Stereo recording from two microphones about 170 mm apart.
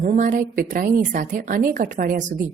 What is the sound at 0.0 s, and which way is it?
A woman's voice, 50° right (ahead or behind).